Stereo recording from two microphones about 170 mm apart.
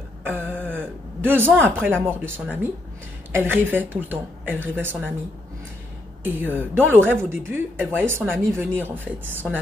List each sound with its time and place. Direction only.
0.2 s a sound: 10° right (ahead or behind)
0.7 s speech: 10° right (ahead or behind)
6.2 s speech: 10° right (ahead or behind)